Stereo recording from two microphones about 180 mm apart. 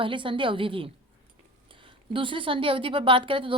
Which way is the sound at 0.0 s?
25° right (ahead or behind).